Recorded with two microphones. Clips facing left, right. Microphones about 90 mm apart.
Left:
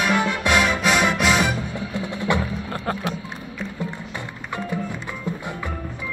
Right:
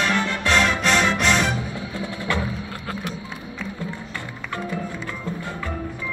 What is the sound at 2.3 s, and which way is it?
Music, 20° left (ahead or behind).